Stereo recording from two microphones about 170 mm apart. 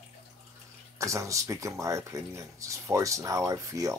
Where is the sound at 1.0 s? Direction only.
20° right (ahead or behind).